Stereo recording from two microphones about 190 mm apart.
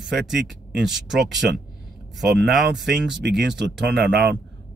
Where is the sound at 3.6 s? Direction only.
60° right (ahead or behind).